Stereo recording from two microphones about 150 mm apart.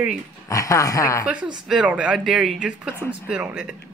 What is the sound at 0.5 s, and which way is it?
Speech, 20° left (ahead or behind).